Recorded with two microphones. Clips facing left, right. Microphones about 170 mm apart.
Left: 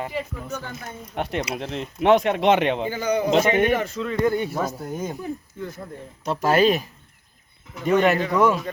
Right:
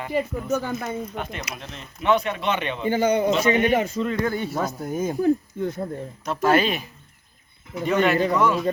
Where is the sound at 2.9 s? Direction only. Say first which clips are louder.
Right 2 dB; 25° right (ahead or behind).